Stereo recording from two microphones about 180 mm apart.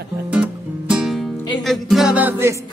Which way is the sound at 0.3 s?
5° right (ahead or behind).